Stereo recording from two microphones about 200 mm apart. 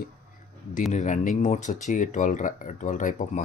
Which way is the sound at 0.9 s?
40° left (ahead or behind).